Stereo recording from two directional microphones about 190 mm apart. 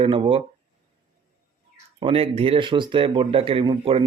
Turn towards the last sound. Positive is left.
turn(degrees=-30)  # may be behind; listen again after turning